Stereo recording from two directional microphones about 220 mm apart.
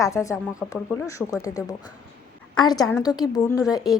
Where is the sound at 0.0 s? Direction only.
15° left (ahead or behind).